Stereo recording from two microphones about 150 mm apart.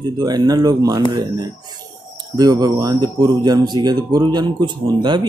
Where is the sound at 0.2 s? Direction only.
25° right (ahead or behind).